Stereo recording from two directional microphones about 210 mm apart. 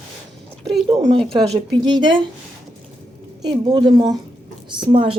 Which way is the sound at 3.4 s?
20° right (ahead or behind).